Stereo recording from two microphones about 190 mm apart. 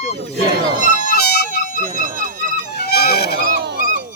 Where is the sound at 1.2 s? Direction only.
55° left (ahead or behind).